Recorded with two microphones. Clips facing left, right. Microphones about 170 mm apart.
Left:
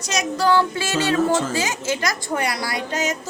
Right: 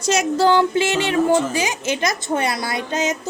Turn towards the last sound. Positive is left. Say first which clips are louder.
# right 2 dB
turn(degrees=-20)  # may be behind; listen again after turning